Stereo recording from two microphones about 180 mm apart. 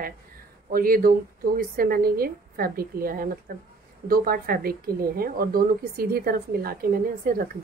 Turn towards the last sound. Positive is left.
turn(degrees=-55)  # may be behind; listen again after turning